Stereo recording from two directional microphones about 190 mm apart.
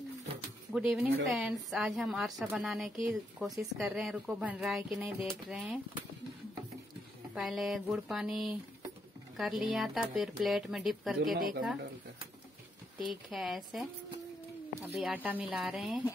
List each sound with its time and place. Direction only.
0.7 s speech: 5° right (ahead or behind)
7.3 s speech: centre (ahead or behind)
11.3 s speech: 50° right (ahead or behind)
13.1 s speech: centre (ahead or behind)
15.0 s speech: 5° right (ahead or behind)